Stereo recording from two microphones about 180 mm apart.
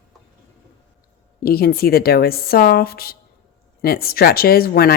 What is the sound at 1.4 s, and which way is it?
Speech, 60° left (ahead or behind).